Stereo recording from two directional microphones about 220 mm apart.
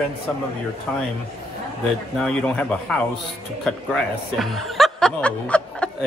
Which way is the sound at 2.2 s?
5° left (ahead or behind).